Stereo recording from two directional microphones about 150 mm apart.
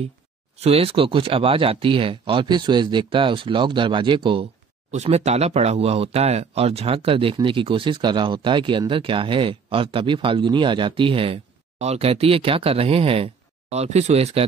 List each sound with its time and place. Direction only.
0.6 s speech: 45° right (ahead or behind)
4.9 s speech: 45° right (ahead or behind)